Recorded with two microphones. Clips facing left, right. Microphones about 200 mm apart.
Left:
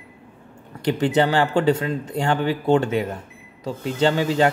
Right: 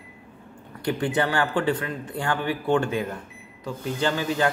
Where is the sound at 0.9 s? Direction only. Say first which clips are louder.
Left 5 dB; 20° left (ahead or behind).